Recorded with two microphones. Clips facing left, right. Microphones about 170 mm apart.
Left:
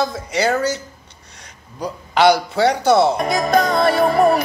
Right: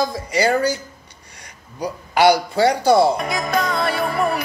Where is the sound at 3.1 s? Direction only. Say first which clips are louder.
Left 5 dB; 40° left (ahead or behind).